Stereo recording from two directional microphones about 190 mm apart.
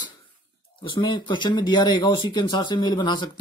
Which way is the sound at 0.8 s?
25° left (ahead or behind).